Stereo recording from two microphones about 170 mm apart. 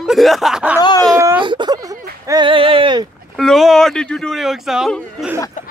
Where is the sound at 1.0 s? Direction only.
20° right (ahead or behind).